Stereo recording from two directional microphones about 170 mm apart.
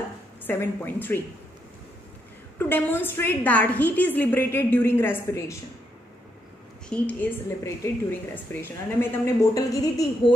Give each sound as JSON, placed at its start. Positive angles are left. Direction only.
{"t": 0.5, "sound": "a woman's voice", "side_deg": 10}
{"t": 2.6, "sound": "a woman's voice", "side_deg": 10}
{"t": 6.9, "sound": "a woman's voice", "side_deg": 10}